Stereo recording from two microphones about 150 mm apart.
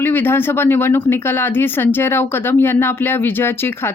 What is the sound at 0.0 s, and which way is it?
Speech, 15° left (ahead or behind).